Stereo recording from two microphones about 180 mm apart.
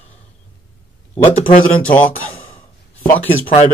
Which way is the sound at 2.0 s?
10° left (ahead or behind).